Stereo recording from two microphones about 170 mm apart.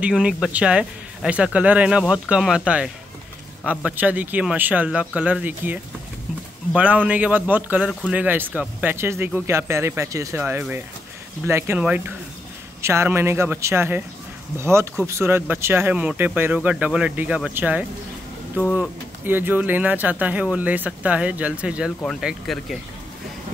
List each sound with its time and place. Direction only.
0.0 s speech: 5° right (ahead or behind)